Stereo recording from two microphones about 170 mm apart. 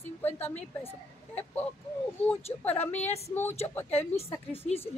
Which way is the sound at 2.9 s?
40° left (ahead or behind).